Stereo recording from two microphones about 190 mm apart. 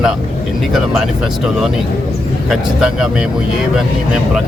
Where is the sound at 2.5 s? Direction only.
5° right (ahead or behind).